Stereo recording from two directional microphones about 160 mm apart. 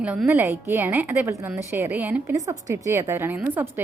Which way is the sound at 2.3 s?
20° right (ahead or behind).